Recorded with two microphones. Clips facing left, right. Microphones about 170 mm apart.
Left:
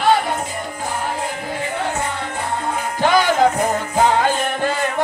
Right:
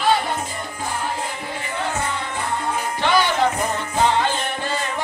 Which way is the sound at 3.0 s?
45° left (ahead or behind).